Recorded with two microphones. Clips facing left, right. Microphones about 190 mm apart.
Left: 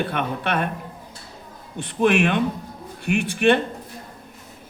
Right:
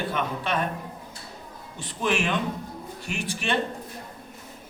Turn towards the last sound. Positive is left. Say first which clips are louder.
# left 9 dB
turn(degrees=60)  # may be behind; listen again after turning